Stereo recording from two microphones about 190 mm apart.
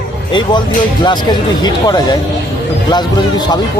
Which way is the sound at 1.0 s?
25° left (ahead or behind).